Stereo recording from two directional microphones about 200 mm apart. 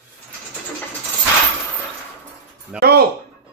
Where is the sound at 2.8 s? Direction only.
50° right (ahead or behind).